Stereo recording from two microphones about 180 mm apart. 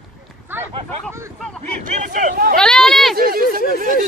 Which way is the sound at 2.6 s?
5° left (ahead or behind).